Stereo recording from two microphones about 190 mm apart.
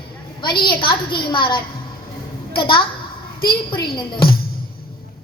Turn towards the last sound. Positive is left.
turn(degrees=25)  # may be behind; listen again after turning